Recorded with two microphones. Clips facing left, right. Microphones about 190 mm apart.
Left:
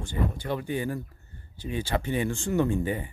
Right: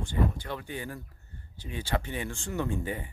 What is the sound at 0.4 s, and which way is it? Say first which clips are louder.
Speech: left 7 dB; 15° left (ahead or behind).